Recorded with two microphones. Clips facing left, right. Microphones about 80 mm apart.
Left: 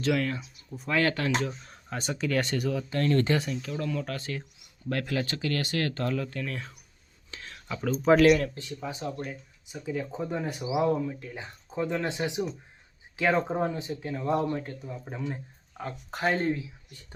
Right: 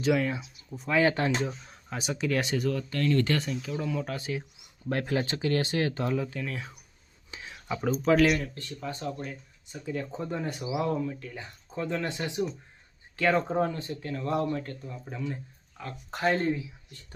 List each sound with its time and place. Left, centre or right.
0.0 s speech: centre
1.0 s speech: right
1.6 s speech: centre
3.0 s speech: left
3.3 s speech: centre
4.9 s speech: right
6.3 s speech: centre
7.3 s a sound: centre
8.5 s speech: centre
16.1 s speech: centre